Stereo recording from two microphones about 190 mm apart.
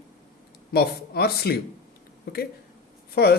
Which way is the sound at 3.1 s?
55° left (ahead or behind).